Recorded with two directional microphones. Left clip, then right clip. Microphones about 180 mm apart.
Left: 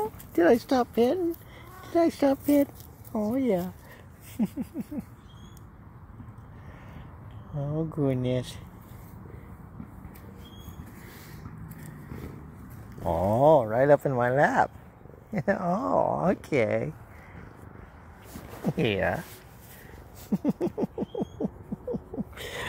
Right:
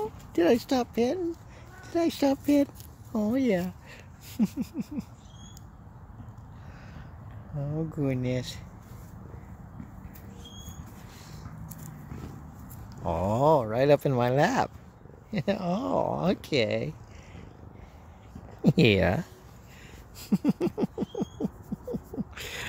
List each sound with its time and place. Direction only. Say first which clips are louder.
0.3 s speech: left 2 dB; 10° right (ahead or behind); by 5.0 s 25° right (ahead or behind)
7.5 s speech: left 3 dB; 5° right (ahead or behind)
13.0 s speech: left 3 dB; 10° right (ahead or behind)
13.7 s speech: left 2 dB; 25° right (ahead or behind); by 14.7 s 45° right (ahead or behind)
15.3 s speech: left 3 dB; 25° right (ahead or behind)
18.7 s speech: right 3 dB; 60° right (ahead or behind)
20.2 s a sound: right 1 dB; 30° right (ahead or behind); by 22.7 s 5° right (ahead or behind)